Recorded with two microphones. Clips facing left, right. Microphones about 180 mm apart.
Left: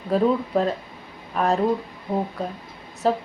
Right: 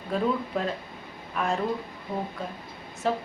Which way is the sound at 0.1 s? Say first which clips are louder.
Left 7 dB; 40° left (ahead or behind).